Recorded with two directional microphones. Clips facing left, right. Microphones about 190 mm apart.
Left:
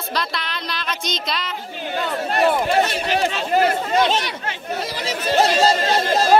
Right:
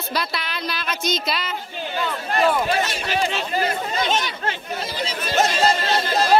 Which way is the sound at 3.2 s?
70° left (ahead or behind).